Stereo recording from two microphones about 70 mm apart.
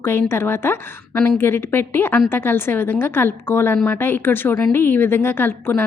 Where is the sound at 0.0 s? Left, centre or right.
Left.